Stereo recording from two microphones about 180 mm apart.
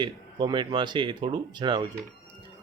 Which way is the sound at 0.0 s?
25° right (ahead or behind).